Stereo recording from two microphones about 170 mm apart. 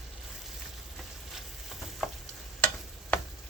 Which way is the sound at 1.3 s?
Centre (ahead or behind).